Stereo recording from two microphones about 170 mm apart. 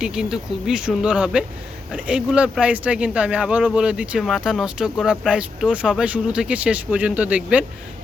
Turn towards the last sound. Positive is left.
turn(degrees=-5)  # may be behind; listen again after turning